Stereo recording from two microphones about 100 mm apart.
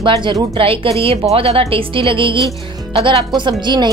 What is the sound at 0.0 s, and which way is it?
Speech, 55° right (ahead or behind).